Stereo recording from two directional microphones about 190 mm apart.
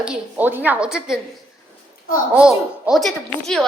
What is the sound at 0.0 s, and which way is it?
A woman's voice, 5° right (ahead or behind).